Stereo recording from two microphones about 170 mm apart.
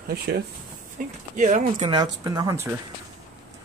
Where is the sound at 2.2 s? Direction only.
20° right (ahead or behind).